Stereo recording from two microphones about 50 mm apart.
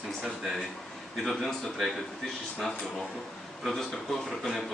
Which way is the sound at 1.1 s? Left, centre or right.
Centre.